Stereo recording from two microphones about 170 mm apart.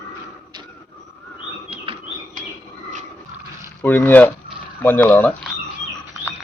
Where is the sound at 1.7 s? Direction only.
35° right (ahead or behind).